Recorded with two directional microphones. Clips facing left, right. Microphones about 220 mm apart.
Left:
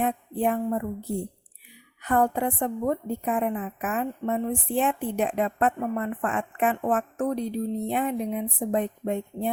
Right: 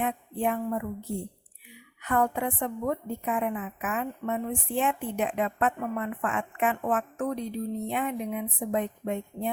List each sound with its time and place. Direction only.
0.0 s a woman's voice: 35° left (ahead or behind)
2.0 s a woman's voice: 35° left (ahead or behind)